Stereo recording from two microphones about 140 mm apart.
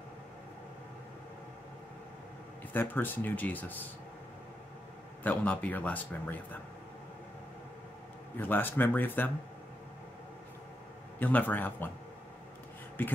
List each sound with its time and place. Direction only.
2.7 s a man's voice: 15° left (ahead or behind)
5.2 s a man's voice: 10° left (ahead or behind)
8.4 s a man's voice: 15° left (ahead or behind)
11.1 s a man's voice: 10° left (ahead or behind)